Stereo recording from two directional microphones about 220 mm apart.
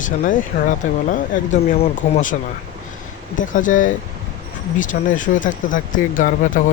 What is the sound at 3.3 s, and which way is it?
Speech, 35° left (ahead or behind).